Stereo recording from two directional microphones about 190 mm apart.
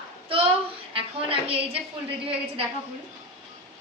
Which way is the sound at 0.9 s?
30° right (ahead or behind).